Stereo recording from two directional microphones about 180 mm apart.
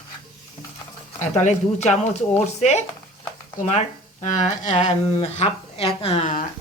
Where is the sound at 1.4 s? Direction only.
40° left (ahead or behind).